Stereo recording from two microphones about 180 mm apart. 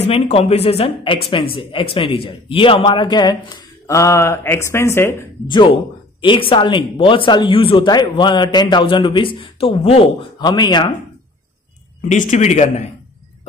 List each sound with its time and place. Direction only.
0.0 s speech: 35° left (ahead or behind); by 5.1 s 15° left (ahead or behind)
5.5 s speech: 25° left (ahead or behind)
12.0 s speech: 40° left (ahead or behind)